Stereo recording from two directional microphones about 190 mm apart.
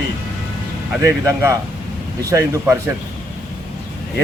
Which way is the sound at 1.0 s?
15° right (ahead or behind).